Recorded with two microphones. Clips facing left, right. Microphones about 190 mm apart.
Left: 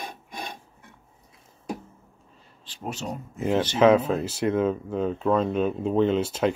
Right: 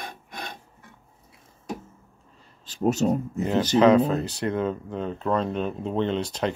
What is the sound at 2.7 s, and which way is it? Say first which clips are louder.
Speech: right 11 dB; 45° right (ahead or behind).